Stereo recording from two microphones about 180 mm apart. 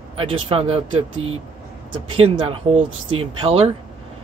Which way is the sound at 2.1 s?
30° right (ahead or behind).